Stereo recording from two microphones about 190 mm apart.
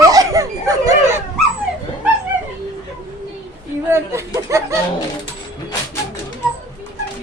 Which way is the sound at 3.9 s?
15° right (ahead or behind).